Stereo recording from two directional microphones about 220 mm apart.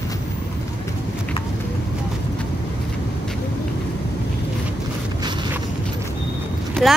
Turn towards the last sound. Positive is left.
turn(degrees=5)  # may be behind; listen again after turning